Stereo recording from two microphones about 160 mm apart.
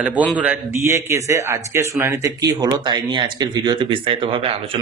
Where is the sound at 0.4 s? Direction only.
15° right (ahead or behind).